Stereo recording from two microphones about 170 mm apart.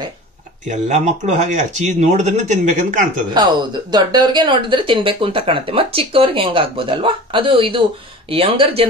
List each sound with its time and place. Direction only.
0.7 s speech: 45° right (ahead or behind)
3.3 s speech: 25° right (ahead or behind)